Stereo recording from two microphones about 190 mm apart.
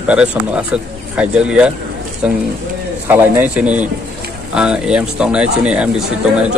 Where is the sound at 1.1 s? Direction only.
5° right (ahead or behind).